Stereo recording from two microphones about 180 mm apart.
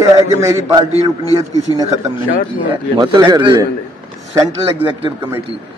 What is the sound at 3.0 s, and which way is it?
Speech, 20° right (ahead or behind).